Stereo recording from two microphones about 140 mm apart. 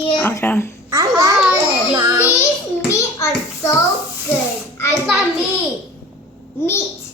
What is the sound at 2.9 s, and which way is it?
Speech, 20° left (ahead or behind).